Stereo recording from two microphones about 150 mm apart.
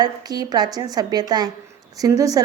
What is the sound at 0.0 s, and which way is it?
A woman's voice, 25° right (ahead or behind).